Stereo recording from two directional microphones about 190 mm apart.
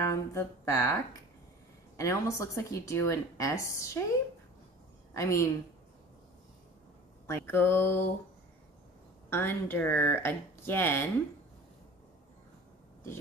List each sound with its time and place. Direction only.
0.0 s speech: 15° left (ahead or behind)
5.1 s speech: 15° left (ahead or behind)
7.2 s speech: 10° left (ahead or behind)
9.3 s speech: 10° left (ahead or behind)